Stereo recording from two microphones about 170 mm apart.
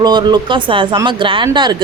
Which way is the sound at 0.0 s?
25° right (ahead or behind).